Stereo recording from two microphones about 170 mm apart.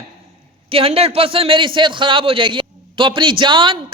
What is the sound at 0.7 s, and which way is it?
A man's voice, 35° right (ahead or behind).